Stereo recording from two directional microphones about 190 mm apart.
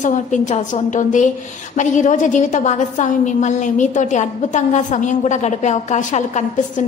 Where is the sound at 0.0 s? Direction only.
40° left (ahead or behind).